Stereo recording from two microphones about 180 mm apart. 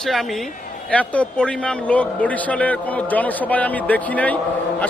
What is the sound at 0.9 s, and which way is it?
A man's voice, 5° left (ahead or behind).